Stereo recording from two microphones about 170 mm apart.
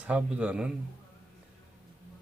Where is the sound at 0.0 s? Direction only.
5° right (ahead or behind).